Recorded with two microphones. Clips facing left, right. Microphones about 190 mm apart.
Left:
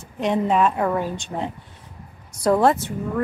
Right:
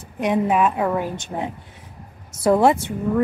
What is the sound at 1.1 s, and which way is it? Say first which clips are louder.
Speech: right 1 dB; 15° right (ahead or behind).